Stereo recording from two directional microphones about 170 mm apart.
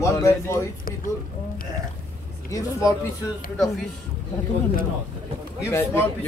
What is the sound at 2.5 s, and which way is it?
Speech, 20° left (ahead or behind).